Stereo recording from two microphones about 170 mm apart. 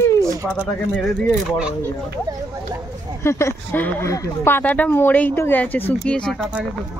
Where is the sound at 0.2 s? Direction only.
15° right (ahead or behind).